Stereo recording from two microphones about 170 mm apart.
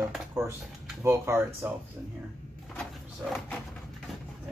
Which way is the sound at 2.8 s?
Centre (ahead or behind).